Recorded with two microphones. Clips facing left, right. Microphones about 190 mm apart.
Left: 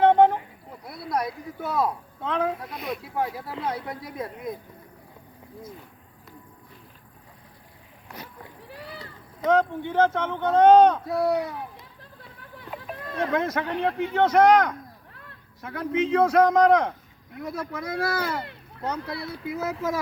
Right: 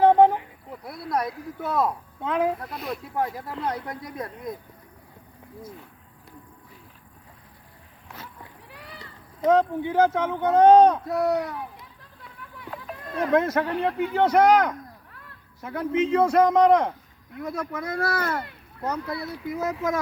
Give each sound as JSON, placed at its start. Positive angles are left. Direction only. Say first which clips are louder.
{"t": 0.0, "sound": "a sound", "louder": "right 1 dB", "side_deg": -5}
{"t": 0.9, "sound": "speech", "louder": "right 1 dB", "side_deg": 0}
{"t": 9.5, "sound": "speech", "louder": "right 2 dB", "side_deg": -5}
{"t": 11.2, "sound": "speech", "louder": "left 1 dB", "side_deg": 10}
{"t": 12.4, "sound": "a sound", "louder": "even", "side_deg": 30}
{"t": 13.3, "sound": "speech", "louder": "right 5 dB", "side_deg": -5}